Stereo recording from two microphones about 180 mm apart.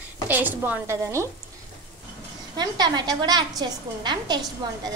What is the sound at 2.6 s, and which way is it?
A woman's voice, 25° right (ahead or behind).